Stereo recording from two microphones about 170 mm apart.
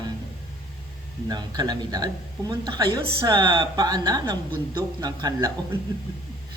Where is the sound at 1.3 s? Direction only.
25° right (ahead or behind).